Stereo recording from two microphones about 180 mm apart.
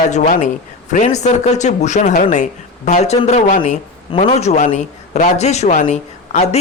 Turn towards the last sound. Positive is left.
turn(degrees=40)  # may be behind; listen again after turning